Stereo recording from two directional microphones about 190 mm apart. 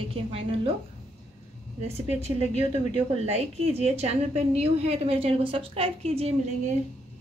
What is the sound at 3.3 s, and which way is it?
A woman's voice, 35° right (ahead or behind).